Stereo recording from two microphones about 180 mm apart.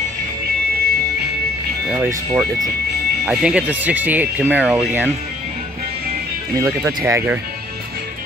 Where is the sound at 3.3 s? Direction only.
5° right (ahead or behind).